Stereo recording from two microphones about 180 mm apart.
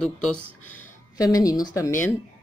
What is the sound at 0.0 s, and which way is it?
Speech, 5° left (ahead or behind).